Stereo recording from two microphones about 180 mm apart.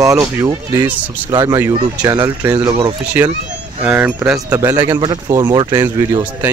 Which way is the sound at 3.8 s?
10° right (ahead or behind).